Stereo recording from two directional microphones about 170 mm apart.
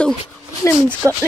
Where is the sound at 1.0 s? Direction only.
15° right (ahead or behind).